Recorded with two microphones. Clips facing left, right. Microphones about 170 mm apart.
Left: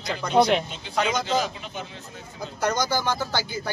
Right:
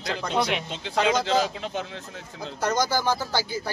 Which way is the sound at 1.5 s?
90° right.